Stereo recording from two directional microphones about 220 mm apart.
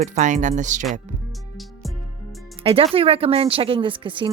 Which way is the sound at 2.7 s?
25° right (ahead or behind).